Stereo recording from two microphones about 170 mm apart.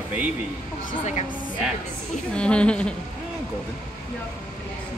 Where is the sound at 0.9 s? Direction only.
45° left (ahead or behind).